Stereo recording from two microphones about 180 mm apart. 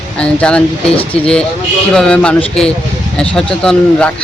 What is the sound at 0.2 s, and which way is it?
Speech, 5° left (ahead or behind).